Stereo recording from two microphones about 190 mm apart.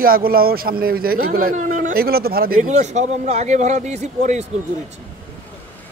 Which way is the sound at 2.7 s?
40° right (ahead or behind).